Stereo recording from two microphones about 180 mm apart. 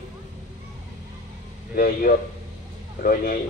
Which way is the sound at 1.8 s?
55° left (ahead or behind).